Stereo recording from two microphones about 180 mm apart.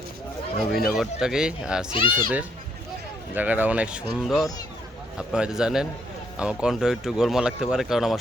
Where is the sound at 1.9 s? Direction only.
30° left (ahead or behind).